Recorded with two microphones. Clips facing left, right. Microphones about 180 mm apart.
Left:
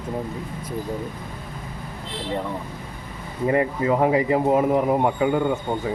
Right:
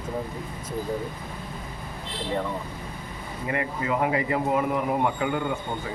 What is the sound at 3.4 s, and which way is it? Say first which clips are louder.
A man's voice: left 8 dB; 35° left (ahead or behind).